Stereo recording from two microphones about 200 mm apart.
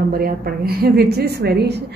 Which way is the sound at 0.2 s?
50° right (ahead or behind).